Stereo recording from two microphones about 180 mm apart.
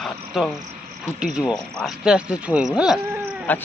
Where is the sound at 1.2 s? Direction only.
5° right (ahead or behind).